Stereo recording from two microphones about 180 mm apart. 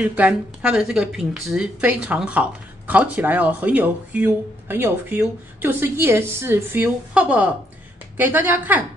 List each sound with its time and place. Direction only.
0.0 s speech: 10° right (ahead or behind)